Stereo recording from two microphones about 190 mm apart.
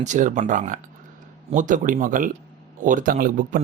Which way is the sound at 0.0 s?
40° right (ahead or behind).